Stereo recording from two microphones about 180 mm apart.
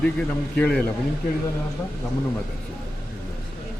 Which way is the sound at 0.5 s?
10° left (ahead or behind).